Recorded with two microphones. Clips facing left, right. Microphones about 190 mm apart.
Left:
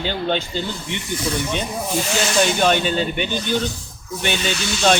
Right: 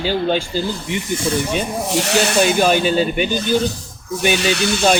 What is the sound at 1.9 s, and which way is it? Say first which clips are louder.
Speech: right 5 dB; 75° right (ahead or behind).